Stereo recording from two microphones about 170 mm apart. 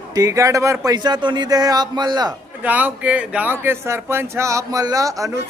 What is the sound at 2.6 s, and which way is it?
Speech, 10° right (ahead or behind).